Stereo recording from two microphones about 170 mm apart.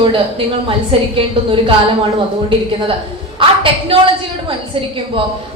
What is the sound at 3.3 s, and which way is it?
Speech, 30° right (ahead or behind).